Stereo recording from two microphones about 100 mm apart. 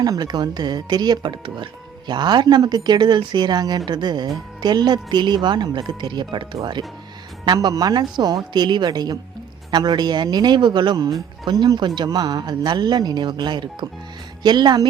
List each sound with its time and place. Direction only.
0.0 s speech: 40° right (ahead or behind)